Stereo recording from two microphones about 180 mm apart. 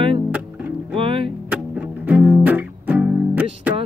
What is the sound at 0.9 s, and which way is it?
Music, 30° right (ahead or behind).